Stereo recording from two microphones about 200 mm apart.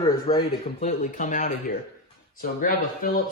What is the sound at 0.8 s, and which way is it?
Speech, 35° left (ahead or behind).